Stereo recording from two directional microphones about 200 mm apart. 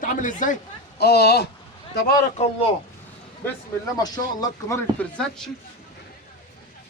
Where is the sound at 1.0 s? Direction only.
55° left (ahead or behind).